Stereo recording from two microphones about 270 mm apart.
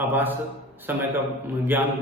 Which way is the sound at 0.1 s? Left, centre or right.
Centre.